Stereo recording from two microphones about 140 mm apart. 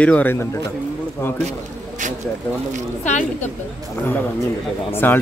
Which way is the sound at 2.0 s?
65° right (ahead or behind).